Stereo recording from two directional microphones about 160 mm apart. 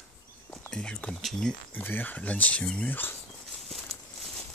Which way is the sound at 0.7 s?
5° left (ahead or behind).